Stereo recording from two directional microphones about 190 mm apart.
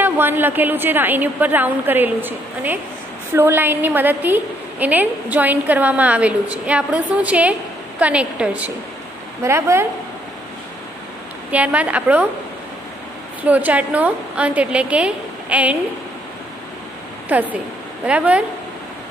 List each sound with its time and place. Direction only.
0.0 s a woman's voice: 10° right (ahead or behind)
11.5 s a woman's voice: 5° right (ahead or behind)
13.4 s a woman's voice: 10° right (ahead or behind)
17.3 s a woman's voice: 10° right (ahead or behind)